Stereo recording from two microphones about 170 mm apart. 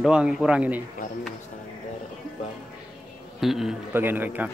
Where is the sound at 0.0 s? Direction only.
5° right (ahead or behind).